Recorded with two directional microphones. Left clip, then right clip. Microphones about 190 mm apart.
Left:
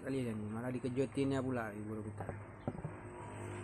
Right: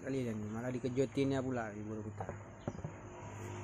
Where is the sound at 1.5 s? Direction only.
5° left (ahead or behind).